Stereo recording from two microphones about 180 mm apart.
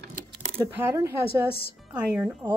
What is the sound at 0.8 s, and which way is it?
Speech, 15° right (ahead or behind).